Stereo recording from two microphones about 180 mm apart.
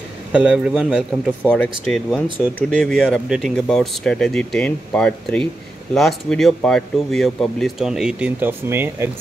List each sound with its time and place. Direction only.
0.3 s a man's voice: 5° right (ahead or behind)
1.5 s speech: 5° left (ahead or behind); by 9.1 s 15° right (ahead or behind)